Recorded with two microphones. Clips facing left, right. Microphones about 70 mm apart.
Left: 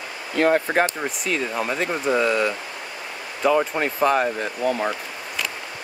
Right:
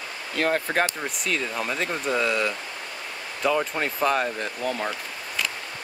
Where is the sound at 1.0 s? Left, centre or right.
Centre.